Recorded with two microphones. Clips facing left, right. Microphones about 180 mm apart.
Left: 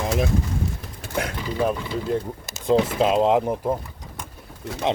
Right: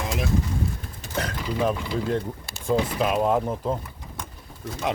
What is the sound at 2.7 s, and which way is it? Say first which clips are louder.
Speech: left 4 dB; 25° left (ahead or behind).